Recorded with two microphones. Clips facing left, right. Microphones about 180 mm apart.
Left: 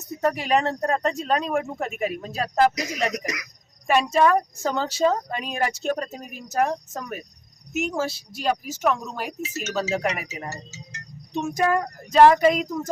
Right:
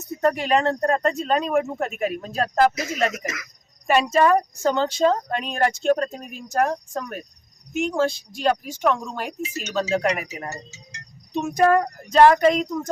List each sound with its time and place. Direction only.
0.2 s speech: 5° left (ahead or behind)
3.2 s speech: 15° left (ahead or behind)
3.8 s speech: centre (ahead or behind)